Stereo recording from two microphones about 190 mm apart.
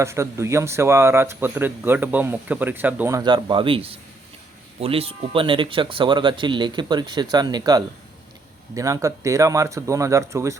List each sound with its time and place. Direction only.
0.0 s speech: 15° right (ahead or behind)